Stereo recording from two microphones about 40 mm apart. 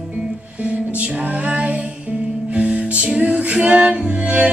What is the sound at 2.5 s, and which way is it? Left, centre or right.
Music, right.